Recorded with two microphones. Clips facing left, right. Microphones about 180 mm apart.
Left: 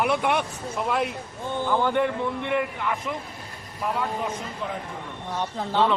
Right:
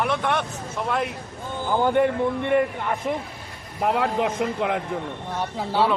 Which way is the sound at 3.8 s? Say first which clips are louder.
Right 6 dB; 65° right (ahead or behind).